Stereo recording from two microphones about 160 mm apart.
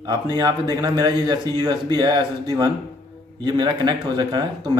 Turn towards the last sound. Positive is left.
turn(degrees=-30)  # may be behind; listen again after turning